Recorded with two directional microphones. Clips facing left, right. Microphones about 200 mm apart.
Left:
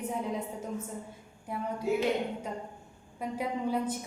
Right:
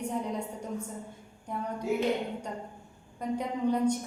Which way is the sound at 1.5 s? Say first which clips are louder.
Even; 5° left (ahead or behind).